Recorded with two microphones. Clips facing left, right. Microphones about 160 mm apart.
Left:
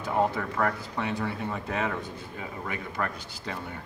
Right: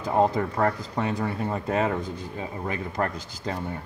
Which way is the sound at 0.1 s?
30° right (ahead or behind).